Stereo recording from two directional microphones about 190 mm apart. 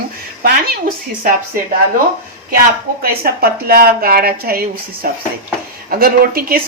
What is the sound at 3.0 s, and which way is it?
Speech, 55° right (ahead or behind).